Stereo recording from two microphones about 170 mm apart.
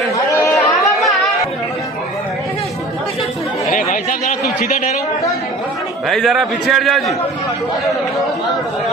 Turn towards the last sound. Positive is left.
turn(degrees=0)  # may be behind; listen again after turning